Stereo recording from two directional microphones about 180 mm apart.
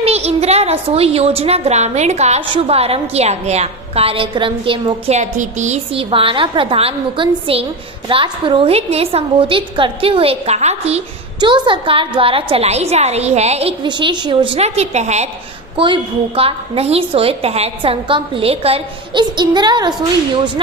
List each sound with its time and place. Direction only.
0.0 s a woman's voice: 35° right (ahead or behind)
11.4 s a woman's voice: 25° right (ahead or behind)